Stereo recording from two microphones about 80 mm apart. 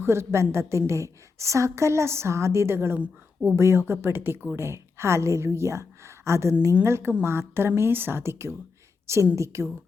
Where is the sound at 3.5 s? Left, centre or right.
Right.